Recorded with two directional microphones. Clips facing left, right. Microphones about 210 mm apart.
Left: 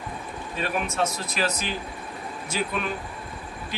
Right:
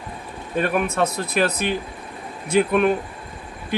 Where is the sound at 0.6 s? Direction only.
55° right (ahead or behind).